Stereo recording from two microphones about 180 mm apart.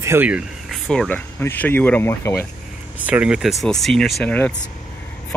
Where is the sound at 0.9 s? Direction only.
5° left (ahead or behind).